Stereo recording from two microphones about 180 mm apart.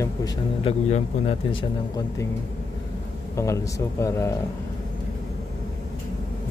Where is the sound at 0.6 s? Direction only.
35° left (ahead or behind).